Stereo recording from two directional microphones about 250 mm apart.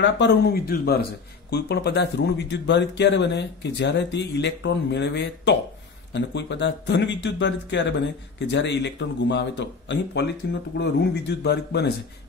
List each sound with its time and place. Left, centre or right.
0.0 s speech: left